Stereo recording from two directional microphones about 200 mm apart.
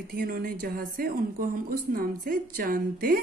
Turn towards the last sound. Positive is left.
turn(degrees=-45)  # may be behind; listen again after turning